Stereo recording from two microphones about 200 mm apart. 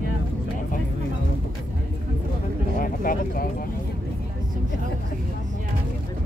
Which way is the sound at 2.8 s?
45° left (ahead or behind).